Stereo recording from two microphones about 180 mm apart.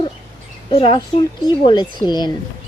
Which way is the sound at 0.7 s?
30° left (ahead or behind).